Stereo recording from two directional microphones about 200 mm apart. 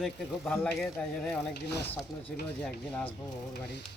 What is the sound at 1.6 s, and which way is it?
Speech, 55° left (ahead or behind).